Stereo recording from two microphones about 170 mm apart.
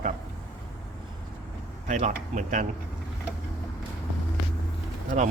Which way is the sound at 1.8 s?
45° right (ahead or behind).